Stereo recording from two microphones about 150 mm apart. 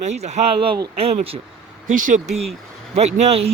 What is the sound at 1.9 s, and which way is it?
Speech, 60° right (ahead or behind).